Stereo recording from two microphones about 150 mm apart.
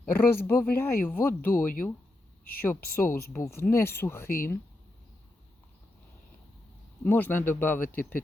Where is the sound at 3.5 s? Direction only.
15° left (ahead or behind).